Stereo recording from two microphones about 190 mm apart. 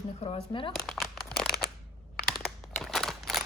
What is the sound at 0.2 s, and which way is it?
Speech, 30° left (ahead or behind).